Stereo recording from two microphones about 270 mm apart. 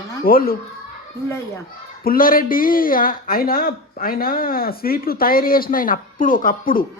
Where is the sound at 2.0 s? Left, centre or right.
Left.